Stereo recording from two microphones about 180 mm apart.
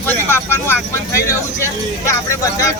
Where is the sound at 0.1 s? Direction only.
10° left (ahead or behind).